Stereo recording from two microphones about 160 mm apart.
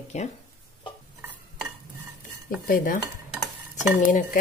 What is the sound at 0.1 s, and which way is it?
Speech, 45° left (ahead or behind).